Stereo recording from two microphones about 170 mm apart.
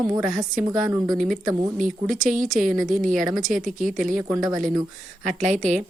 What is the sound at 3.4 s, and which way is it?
Speech, 50° right (ahead or behind).